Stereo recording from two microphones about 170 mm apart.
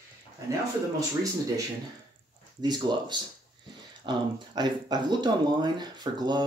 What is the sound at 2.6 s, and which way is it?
Speech, 25° right (ahead or behind).